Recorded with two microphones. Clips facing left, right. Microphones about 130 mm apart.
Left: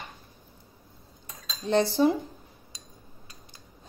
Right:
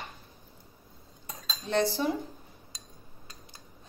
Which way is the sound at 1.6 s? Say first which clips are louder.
Left 5 dB; 30° left (ahead or behind).